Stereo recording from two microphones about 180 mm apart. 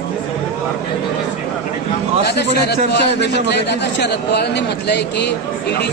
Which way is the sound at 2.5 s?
65° left (ahead or behind).